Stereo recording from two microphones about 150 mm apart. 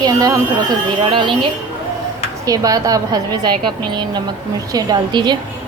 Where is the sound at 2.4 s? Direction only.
25° right (ahead or behind).